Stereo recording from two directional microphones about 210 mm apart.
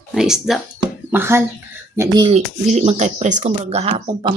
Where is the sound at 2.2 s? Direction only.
30° right (ahead or behind).